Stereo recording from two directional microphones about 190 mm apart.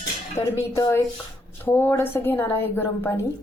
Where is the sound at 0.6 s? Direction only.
15° left (ahead or behind).